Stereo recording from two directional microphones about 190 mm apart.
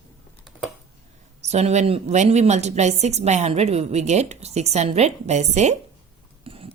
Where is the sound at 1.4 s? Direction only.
35° right (ahead or behind).